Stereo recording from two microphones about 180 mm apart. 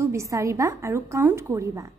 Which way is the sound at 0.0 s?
15° right (ahead or behind).